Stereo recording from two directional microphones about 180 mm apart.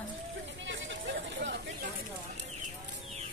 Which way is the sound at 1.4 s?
80° right.